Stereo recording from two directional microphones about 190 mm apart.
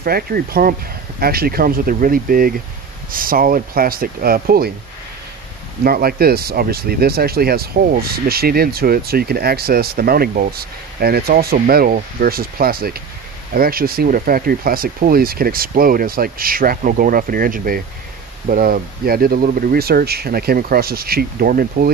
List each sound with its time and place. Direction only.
0.0 s speech: 50° right (ahead or behind)
5.9 s speech: 55° right (ahead or behind)